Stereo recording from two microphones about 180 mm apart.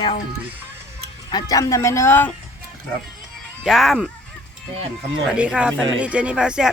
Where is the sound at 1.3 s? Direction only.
20° left (ahead or behind).